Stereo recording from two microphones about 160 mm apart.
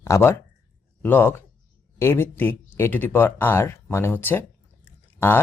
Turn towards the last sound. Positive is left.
turn(degrees=15)  # may be behind; listen again after turning